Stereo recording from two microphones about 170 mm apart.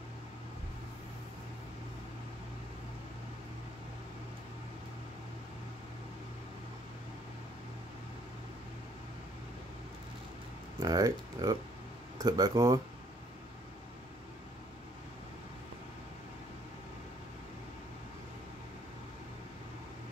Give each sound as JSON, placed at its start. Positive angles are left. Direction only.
{"t": 10.8, "sound": "speech", "side_deg": -25}